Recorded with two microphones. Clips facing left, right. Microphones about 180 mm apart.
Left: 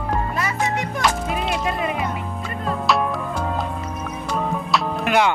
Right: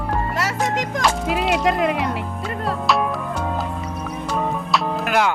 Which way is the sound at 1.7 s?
80° right.